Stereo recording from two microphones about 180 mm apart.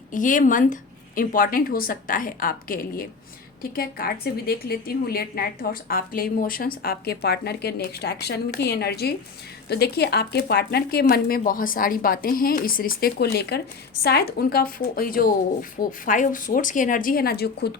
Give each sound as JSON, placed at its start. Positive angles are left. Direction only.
{"t": 0.1, "sound": "speech", "side_deg": 45}